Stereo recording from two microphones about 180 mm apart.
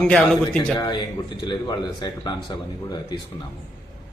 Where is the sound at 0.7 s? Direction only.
25° left (ahead or behind).